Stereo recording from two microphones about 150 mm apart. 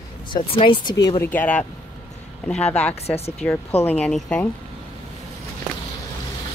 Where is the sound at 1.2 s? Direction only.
10° left (ahead or behind).